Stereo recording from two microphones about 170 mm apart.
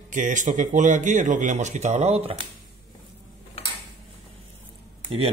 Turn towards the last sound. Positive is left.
turn(degrees=-35)  # may be behind; listen again after turning